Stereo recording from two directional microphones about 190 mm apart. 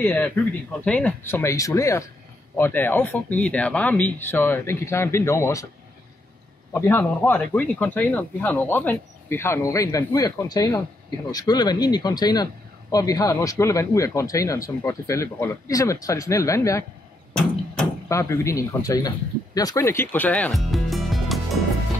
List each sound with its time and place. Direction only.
0.0 s speech: 10° left (ahead or behind)
6.7 s speech: 10° left (ahead or behind)
18.0 s speech: 15° left (ahead or behind); by 21.4 s centre (ahead or behind)